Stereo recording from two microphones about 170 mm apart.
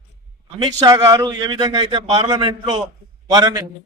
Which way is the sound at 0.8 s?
20° right (ahead or behind).